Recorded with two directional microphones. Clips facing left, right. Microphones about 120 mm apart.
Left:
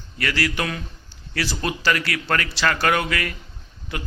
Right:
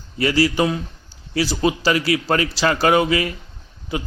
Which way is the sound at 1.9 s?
20° right (ahead or behind).